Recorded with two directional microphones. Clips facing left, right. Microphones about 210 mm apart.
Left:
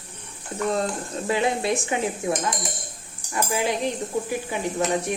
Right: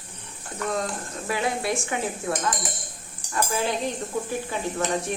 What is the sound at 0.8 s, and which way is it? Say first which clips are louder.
Speech: left 4 dB; 25° left (ahead or behind).